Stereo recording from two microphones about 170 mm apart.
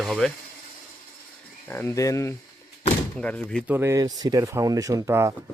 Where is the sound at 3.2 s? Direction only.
5° left (ahead or behind).